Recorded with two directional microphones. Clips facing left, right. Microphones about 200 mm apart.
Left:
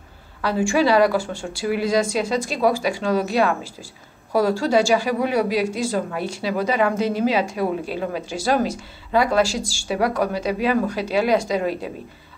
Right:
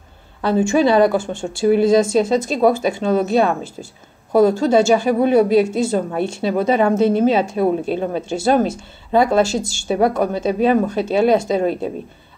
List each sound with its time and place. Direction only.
0.4 s speech: 25° right (ahead or behind)